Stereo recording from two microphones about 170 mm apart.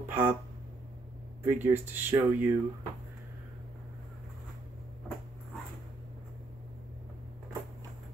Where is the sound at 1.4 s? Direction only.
10° right (ahead or behind).